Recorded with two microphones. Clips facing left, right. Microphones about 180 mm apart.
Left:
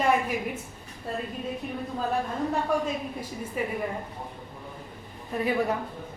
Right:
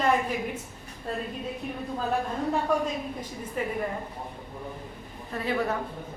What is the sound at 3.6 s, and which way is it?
Speech, 10° left (ahead or behind).